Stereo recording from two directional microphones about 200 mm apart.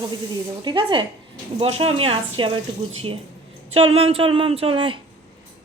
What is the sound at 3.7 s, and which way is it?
Speech, 30° right (ahead or behind).